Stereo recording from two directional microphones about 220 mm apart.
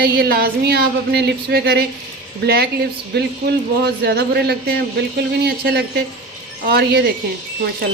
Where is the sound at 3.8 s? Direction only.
45° right (ahead or behind).